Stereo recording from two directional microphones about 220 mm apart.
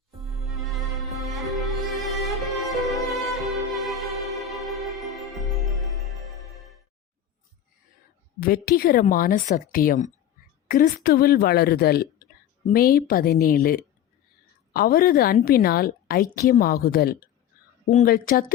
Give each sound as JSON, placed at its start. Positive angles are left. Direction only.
{"t": 0.4, "sound": "music", "side_deg": 0}
{"t": 8.4, "sound": "a woman's voice", "side_deg": 40}